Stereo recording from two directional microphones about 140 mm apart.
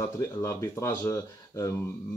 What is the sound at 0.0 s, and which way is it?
Speech, 20° left (ahead or behind).